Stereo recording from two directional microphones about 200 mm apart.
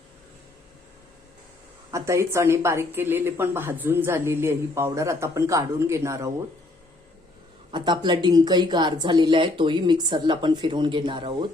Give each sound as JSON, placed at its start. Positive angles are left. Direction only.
{"t": 1.9, "sound": "a woman's voice", "side_deg": -15}
{"t": 7.7, "sound": "speech", "side_deg": -20}